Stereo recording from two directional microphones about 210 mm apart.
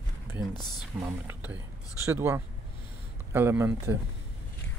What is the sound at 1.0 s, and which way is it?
Speech, 10° right (ahead or behind).